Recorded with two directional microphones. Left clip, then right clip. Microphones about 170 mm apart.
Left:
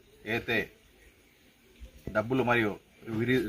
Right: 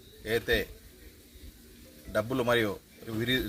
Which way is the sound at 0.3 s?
50° right (ahead or behind).